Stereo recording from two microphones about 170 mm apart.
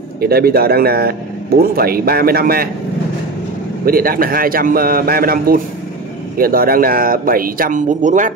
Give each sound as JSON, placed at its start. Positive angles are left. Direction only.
{"t": 0.2, "sound": "speech", "side_deg": -65}
{"t": 3.8, "sound": "speech", "side_deg": -60}